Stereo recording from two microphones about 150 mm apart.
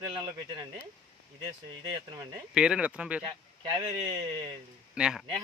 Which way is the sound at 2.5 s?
5° right (ahead or behind).